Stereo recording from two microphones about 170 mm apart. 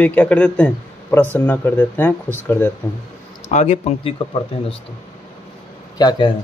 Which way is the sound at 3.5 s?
40° left (ahead or behind).